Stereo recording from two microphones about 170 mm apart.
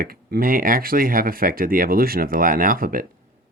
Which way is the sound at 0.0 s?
60° right (ahead or behind).